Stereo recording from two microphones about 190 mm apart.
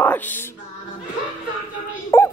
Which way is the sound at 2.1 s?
15° left (ahead or behind).